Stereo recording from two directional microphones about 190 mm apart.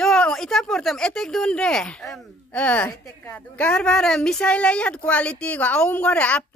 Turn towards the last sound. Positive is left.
turn(degrees=5)  # may be behind; listen again after turning